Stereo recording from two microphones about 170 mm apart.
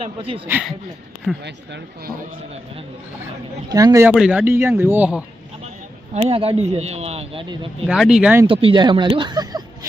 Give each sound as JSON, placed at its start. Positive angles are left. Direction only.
{"t": 0.0, "sound": "speech", "side_deg": -30}
{"t": 0.4, "sound": "speech", "side_deg": -10}
{"t": 1.5, "sound": "speech", "side_deg": -85}
{"t": 3.7, "sound": "speech", "side_deg": -20}
{"t": 4.1, "sound": "speech", "side_deg": -5}
{"t": 6.1, "sound": "speech", "side_deg": -35}
{"t": 7.9, "sound": "speech", "side_deg": 0}
{"t": 8.4, "sound": "speech", "side_deg": -30}